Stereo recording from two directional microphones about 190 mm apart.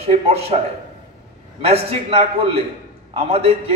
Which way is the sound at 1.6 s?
30° right (ahead or behind).